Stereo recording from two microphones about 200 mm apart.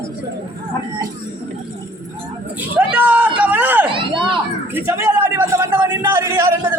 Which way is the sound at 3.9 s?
25° right (ahead or behind).